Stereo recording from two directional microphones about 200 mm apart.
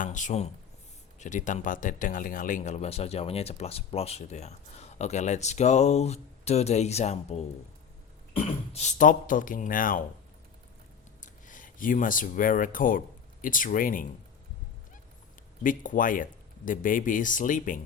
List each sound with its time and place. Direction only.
0.0 s speech: 40° left (ahead or behind)
11.2 s speech: 40° left (ahead or behind)
15.6 s speech: 40° left (ahead or behind)